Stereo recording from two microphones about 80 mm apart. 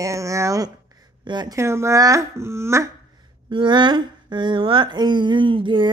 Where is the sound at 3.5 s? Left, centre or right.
Right.